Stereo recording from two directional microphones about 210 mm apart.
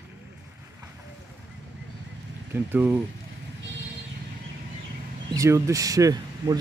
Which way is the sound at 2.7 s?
10° right (ahead or behind).